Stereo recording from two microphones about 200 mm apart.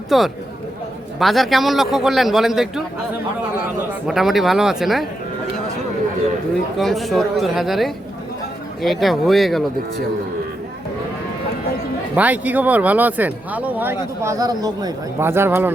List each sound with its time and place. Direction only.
0.1 s a man's voice: centre (ahead or behind)
4.0 s a man's voice: centre (ahead or behind)
6.7 s a man's voice: centre (ahead or behind)
12.1 s speech: 5° right (ahead or behind)